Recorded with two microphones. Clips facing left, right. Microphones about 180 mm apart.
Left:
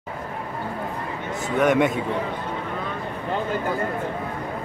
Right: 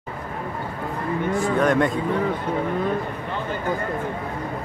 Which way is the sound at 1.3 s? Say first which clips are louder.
Left 1 dB; 20° left (ahead or behind).